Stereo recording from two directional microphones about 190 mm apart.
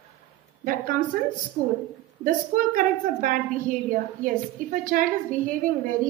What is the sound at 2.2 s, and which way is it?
A woman's voice, 45° right (ahead or behind).